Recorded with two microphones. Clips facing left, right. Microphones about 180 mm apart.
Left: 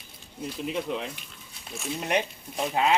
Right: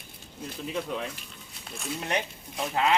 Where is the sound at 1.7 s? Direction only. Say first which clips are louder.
Left 2 dB; centre (ahead or behind).